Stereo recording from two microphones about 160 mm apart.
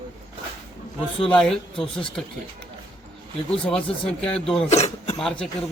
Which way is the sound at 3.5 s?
5° left (ahead or behind).